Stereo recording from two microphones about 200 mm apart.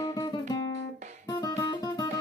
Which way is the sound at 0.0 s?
20° left (ahead or behind).